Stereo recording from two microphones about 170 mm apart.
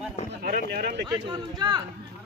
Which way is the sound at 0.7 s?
70° right (ahead or behind).